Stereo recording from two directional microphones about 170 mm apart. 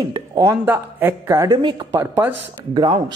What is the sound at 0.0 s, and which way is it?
A man's voice, 20° right (ahead or behind).